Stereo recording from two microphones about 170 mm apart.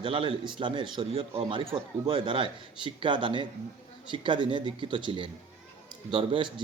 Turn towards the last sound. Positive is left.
turn(degrees=-30)  # may be behind; listen again after turning